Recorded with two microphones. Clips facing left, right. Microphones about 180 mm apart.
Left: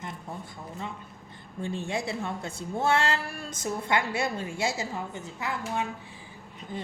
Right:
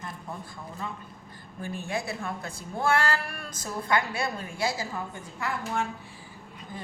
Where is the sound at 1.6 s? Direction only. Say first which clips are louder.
Left 1 dB; 25° left (ahead or behind).